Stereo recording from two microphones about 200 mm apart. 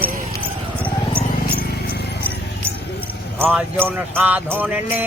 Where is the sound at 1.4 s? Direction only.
50° left (ahead or behind).